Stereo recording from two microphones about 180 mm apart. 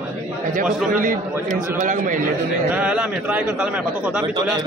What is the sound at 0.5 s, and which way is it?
A man's voice, 50° right (ahead or behind).